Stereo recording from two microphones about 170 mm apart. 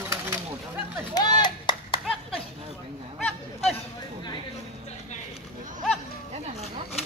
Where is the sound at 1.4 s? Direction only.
25° left (ahead or behind).